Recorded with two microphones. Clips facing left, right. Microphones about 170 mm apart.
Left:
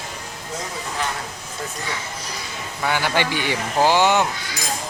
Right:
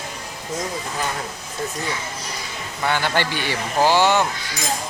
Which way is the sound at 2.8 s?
10° left (ahead or behind).